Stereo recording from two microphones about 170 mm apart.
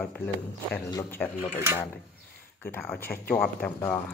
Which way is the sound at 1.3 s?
45° left (ahead or behind).